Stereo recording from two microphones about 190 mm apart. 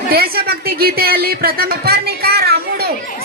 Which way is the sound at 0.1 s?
55° right (ahead or behind).